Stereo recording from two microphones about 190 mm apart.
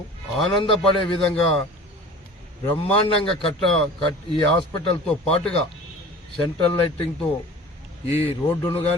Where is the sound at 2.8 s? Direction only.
30° left (ahead or behind).